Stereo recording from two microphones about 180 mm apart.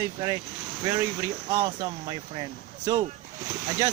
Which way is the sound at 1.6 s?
25° right (ahead or behind).